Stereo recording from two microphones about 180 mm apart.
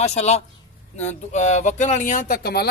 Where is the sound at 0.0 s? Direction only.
40° left (ahead or behind).